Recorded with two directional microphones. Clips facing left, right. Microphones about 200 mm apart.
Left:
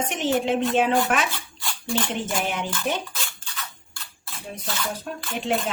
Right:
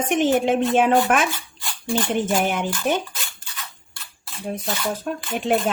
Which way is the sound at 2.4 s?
55° right (ahead or behind).